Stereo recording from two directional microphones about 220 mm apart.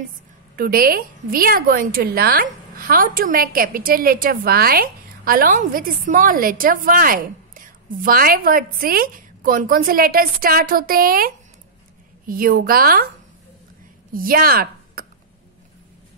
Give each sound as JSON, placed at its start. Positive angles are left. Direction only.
{"t": 0.6, "sound": "a woman's voice", "side_deg": -40}
{"t": 14.1, "sound": "speech", "side_deg": -40}